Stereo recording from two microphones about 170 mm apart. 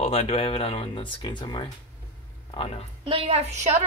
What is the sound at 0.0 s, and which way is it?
A woman's voice, 35° left (ahead or behind).